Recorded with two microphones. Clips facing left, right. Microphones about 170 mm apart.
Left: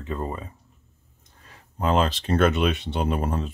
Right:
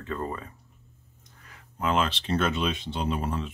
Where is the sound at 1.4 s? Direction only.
35° left (ahead or behind).